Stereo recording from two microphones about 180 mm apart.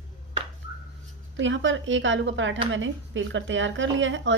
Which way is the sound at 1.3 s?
90° right.